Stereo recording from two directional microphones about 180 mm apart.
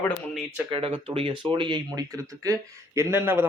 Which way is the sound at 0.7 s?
30° right (ahead or behind).